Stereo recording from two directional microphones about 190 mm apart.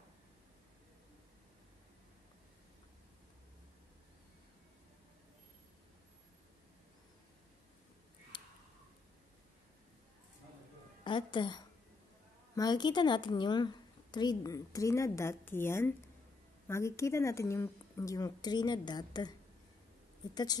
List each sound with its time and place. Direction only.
8.3 s tick: 25° left (ahead or behind)
11.1 s a woman's voice: 25° left (ahead or behind)